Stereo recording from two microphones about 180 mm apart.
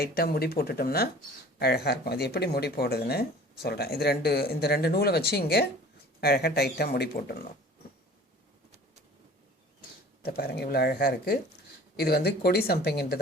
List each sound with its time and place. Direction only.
0.0 s speech: 60° left (ahead or behind)
10.2 s speech: 60° left (ahead or behind)